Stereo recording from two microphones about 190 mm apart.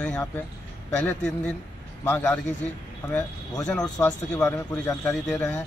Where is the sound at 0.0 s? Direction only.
5° left (ahead or behind).